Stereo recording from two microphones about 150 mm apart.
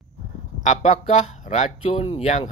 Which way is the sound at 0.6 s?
50° left (ahead or behind).